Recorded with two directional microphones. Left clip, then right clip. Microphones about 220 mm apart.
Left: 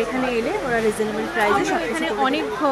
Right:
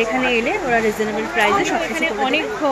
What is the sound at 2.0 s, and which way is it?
Speech, 20° left (ahead or behind).